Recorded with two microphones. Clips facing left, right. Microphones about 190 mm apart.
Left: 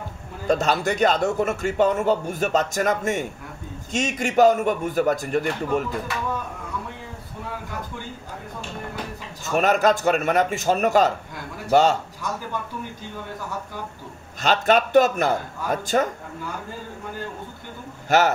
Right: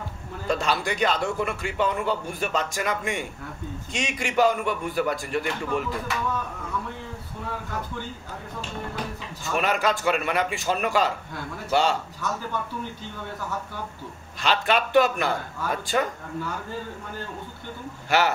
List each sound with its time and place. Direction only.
0.5 s a man's voice: 45° left (ahead or behind)
9.5 s a man's voice: 45° left (ahead or behind)
14.4 s a man's voice: 45° left (ahead or behind)
18.1 s a man's voice: 45° left (ahead or behind)